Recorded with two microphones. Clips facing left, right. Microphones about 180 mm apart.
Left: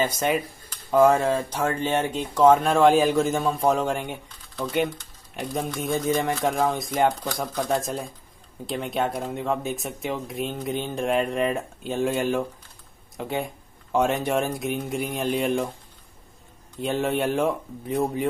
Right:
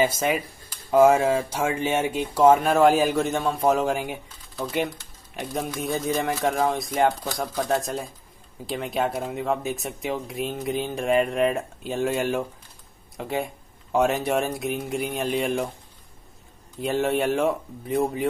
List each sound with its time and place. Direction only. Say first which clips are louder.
0.0 s speech: right 1 dB; 5° right (ahead or behind)
16.8 s speech: right 1 dB; centre (ahead or behind)